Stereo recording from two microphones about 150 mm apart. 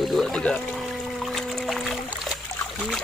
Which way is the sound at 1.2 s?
Centre (ahead or behind).